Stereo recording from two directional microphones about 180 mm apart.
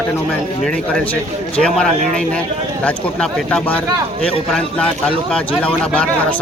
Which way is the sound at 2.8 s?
5° left (ahead or behind).